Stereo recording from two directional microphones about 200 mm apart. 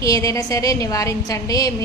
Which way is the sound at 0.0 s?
15° left (ahead or behind).